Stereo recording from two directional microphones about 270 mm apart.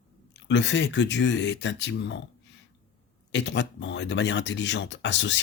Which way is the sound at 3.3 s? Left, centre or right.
Left.